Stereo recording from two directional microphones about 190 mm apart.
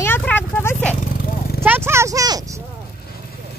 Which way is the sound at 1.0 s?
45° left (ahead or behind).